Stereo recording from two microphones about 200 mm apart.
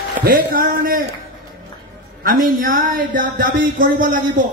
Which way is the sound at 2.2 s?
40° right (ahead or behind).